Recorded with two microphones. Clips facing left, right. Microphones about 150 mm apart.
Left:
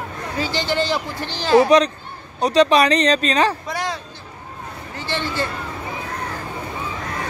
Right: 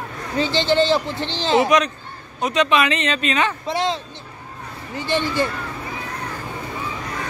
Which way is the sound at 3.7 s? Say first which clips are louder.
Right 4 dB; 25° right (ahead or behind).